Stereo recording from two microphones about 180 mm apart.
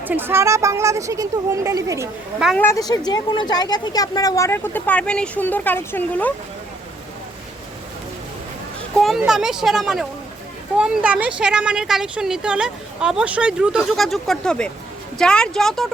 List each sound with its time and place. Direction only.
0.0 s speech: 10° right (ahead or behind)
2.6 s speech: 15° left (ahead or behind)
9.0 s a woman's voice: centre (ahead or behind)